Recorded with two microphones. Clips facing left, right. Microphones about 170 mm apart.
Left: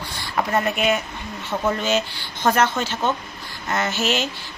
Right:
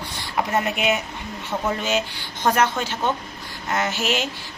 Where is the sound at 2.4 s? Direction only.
10° right (ahead or behind).